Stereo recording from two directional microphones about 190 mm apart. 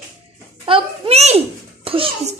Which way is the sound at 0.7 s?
30° right (ahead or behind).